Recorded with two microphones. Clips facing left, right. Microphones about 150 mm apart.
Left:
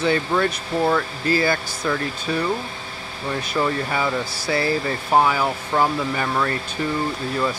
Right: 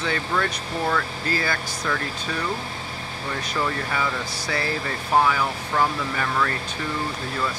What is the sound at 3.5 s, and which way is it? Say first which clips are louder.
Speech: left 4 dB; 20° left (ahead or behind).